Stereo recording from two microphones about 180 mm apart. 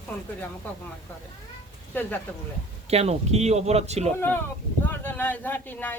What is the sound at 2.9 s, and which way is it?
Speech, 35° right (ahead or behind).